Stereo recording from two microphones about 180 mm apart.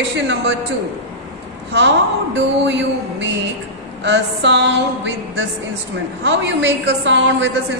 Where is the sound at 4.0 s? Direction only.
75° right (ahead or behind).